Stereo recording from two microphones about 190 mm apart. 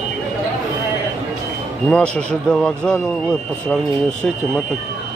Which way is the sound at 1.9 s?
5° left (ahead or behind).